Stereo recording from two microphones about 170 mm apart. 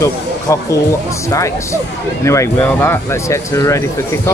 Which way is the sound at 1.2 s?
15° left (ahead or behind).